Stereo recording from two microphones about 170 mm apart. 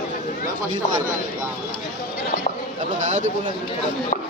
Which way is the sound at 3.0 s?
45° right (ahead or behind).